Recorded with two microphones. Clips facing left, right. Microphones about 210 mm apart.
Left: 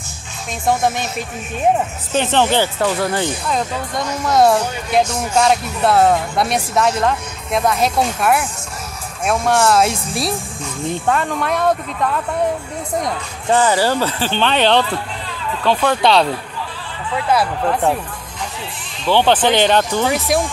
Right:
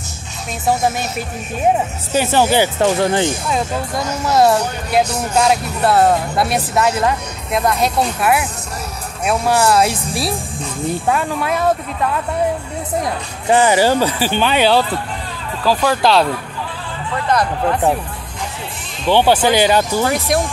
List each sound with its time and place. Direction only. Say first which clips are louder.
2.1 s speech: right 1 dB; 10° right (ahead or behind)
2.8 s speech: right 3 dB; 25° right (ahead or behind)
3.4 s speech: right 1 dB; 5° right (ahead or behind)
17.3 s speech: even; 5° left (ahead or behind)
19.0 s speech: right 1 dB; 10° right (ahead or behind)